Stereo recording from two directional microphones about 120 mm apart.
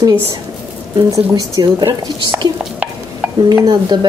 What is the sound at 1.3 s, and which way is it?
Speech, 30° right (ahead or behind).